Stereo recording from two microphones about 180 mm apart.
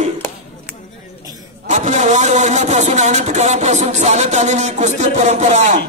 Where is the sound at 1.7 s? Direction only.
40° right (ahead or behind).